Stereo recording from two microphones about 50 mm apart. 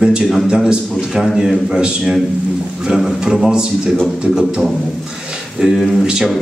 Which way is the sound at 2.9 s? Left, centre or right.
Centre.